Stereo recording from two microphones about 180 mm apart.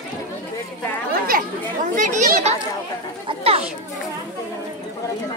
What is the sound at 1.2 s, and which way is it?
Speech, 50° right (ahead or behind).